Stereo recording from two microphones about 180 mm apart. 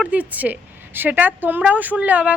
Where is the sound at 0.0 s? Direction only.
10° right (ahead or behind).